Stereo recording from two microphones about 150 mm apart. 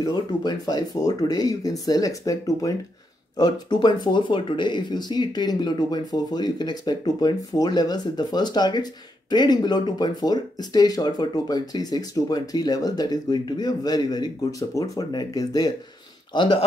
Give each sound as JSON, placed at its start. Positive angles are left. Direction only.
{"t": 0.0, "sound": "speech", "side_deg": 25}